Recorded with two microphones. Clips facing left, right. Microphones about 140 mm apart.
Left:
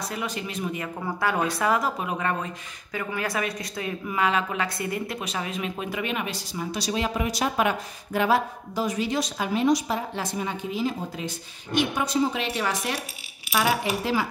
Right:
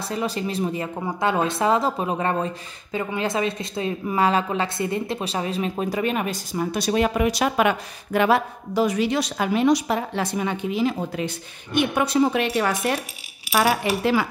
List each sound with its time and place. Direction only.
0.0 s speech: 30° right (ahead or behind)
0.9 s speech: 20° right (ahead or behind); by 13.7 s 45° right (ahead or behind)